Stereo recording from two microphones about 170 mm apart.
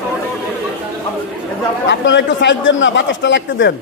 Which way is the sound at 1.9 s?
90° left.